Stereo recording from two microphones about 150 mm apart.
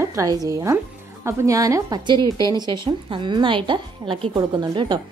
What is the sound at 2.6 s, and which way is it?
A woman's voice, 30° right (ahead or behind).